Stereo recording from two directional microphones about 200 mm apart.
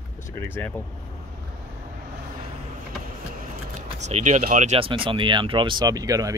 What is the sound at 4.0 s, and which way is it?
Speech, 35° right (ahead or behind).